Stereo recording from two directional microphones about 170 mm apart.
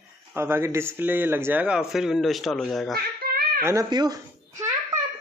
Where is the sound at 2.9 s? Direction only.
60° right (ahead or behind).